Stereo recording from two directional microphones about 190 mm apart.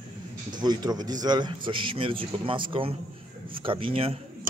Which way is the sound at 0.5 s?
20° right (ahead or behind).